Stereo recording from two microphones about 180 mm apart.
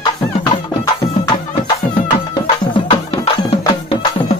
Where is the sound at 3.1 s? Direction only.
30° left (ahead or behind).